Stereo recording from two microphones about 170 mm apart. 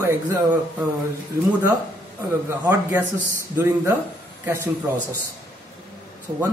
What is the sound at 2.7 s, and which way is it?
Speech, 15° right (ahead or behind).